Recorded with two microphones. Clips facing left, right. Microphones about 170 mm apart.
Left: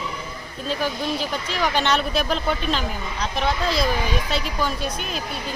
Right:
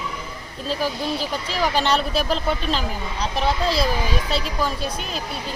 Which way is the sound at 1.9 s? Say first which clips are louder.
Right 1 dB; centre (ahead or behind).